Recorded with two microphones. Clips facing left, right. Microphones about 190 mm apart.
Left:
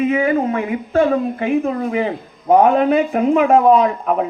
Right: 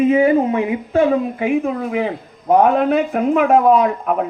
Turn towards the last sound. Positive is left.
turn(degrees=0)  # may be behind; listen again after turning